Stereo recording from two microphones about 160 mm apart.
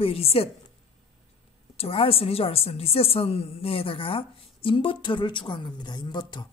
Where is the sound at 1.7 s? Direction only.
35° left (ahead or behind).